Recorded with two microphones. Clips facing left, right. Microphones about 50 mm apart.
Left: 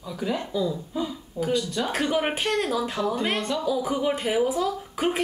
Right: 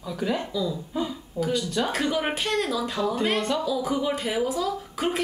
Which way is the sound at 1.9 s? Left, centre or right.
Centre.